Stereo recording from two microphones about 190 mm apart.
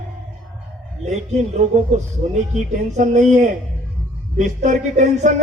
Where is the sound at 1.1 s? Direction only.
35° right (ahead or behind).